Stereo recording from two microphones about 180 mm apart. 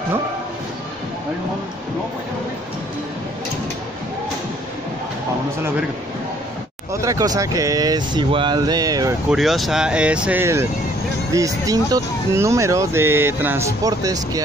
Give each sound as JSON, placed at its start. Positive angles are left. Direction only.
{"t": 6.9, "sound": "speech", "side_deg": -15}
{"t": 9.3, "sound": "speech", "side_deg": 0}